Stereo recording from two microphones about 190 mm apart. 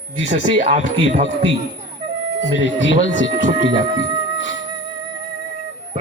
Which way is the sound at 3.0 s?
80° left.